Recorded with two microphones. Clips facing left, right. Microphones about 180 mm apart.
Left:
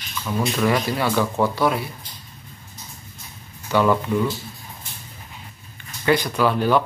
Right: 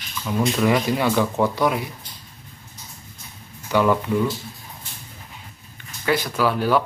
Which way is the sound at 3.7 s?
10° right (ahead or behind).